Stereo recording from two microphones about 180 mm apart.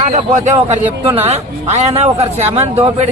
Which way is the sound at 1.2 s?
35° right (ahead or behind).